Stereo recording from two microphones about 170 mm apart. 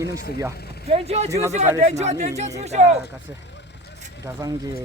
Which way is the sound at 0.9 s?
35° right (ahead or behind).